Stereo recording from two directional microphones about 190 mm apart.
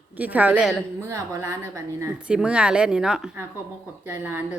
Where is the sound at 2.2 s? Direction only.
5° right (ahead or behind).